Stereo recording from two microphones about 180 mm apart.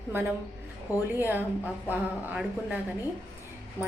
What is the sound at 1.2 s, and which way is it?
A woman's voice, 10° right (ahead or behind).